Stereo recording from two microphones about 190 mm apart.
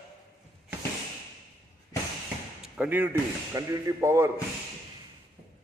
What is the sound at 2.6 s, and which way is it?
A man's voice, 10° right (ahead or behind).